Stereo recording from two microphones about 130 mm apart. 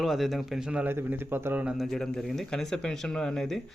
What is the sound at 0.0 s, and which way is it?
A man's voice, centre (ahead or behind).